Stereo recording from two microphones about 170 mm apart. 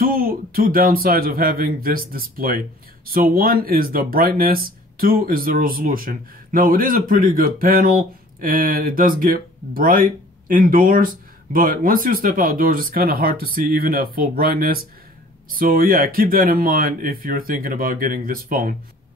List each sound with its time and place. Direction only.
0.0 s speech: 60° right (ahead or behind)